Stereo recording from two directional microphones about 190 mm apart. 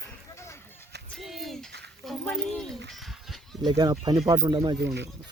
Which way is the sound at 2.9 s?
Centre (ahead or behind).